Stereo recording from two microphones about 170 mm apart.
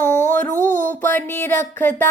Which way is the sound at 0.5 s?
45° left (ahead or behind).